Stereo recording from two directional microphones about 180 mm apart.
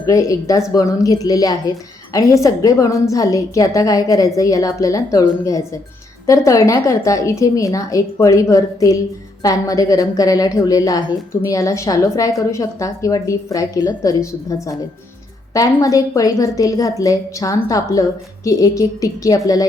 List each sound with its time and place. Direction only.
0.0 s a woman's voice: 20° left (ahead or behind)
6.2 s a woman's voice: 15° left (ahead or behind)